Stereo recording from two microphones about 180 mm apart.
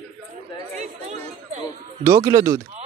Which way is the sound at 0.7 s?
40° right (ahead or behind).